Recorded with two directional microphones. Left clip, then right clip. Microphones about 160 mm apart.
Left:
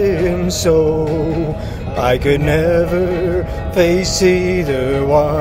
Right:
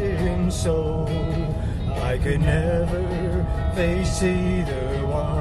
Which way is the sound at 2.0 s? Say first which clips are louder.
Left 12 dB; 45° left (ahead or behind).